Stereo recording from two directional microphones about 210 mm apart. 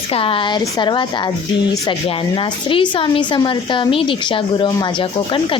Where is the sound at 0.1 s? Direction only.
25° left (ahead or behind).